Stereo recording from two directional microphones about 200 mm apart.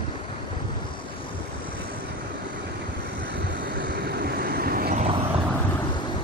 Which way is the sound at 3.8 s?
55° right (ahead or behind).